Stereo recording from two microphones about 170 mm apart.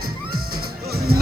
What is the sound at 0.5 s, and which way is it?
Music, 65° right (ahead or behind).